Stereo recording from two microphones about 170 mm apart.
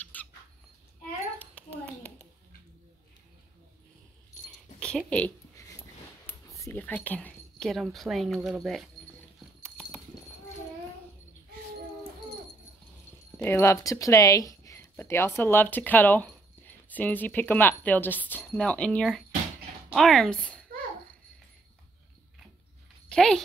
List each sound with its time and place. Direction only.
0.1 s squawk: 10° left (ahead or behind)
1.4 s a sound: 10° left (ahead or behind)
4.7 s speech: 5° left (ahead or behind)
5.6 s dog: 20° left (ahead or behind)
6.2 s speech: 15° left (ahead or behind)
9.6 s horse: 5° left (ahead or behind)
13.4 s speech: 15° left (ahead or behind)
23.0 s speech: 5° left (ahead or behind)